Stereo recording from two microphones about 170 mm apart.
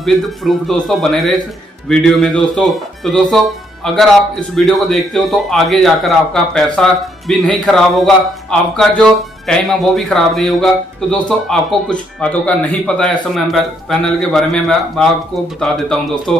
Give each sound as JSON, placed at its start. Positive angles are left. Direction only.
{"t": 0.0, "sound": "speech", "side_deg": 0}